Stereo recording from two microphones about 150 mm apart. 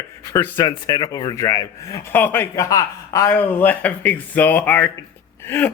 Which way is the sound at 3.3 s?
10° left (ahead or behind).